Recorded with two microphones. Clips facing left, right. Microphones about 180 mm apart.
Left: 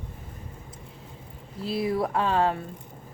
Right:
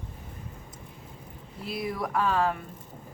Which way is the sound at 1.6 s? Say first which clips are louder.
Left 6 dB; 30° left (ahead or behind).